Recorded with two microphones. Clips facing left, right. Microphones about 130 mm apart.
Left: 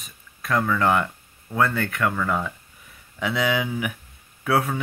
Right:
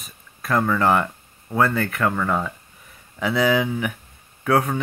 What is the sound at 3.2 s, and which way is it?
Speech, centre (ahead or behind).